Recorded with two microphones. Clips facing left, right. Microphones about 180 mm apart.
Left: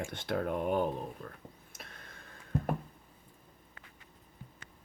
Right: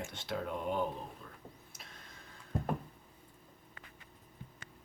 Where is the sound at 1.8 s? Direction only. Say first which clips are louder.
Left 6 dB; 55° left (ahead or behind).